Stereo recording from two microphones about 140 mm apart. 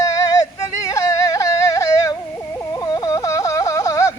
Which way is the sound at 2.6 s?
25° left (ahead or behind).